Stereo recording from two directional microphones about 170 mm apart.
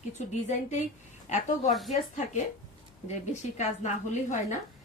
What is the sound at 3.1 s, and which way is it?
A woman's voice, 45° left (ahead or behind).